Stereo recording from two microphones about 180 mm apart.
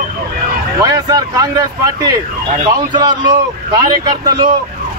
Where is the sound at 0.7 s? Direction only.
20° right (ahead or behind).